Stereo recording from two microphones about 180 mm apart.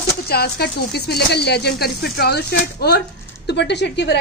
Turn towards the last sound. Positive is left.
turn(degrees=70)  # may be behind; listen again after turning